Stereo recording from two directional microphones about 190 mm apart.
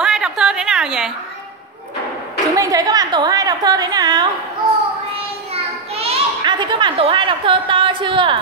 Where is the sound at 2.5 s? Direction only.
20° right (ahead or behind).